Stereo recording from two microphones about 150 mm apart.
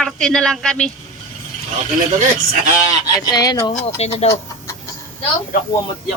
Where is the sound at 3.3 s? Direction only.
25° left (ahead or behind).